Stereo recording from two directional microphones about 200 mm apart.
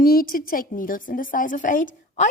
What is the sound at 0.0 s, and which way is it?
A woman's voice, 45° left (ahead or behind).